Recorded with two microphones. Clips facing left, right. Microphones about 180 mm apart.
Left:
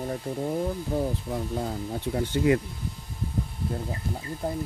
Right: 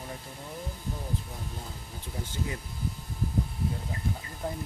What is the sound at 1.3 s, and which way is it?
Speech, 75° left (ahead or behind).